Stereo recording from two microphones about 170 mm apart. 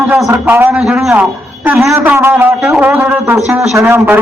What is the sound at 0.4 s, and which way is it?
A man's voice, 10° right (ahead or behind).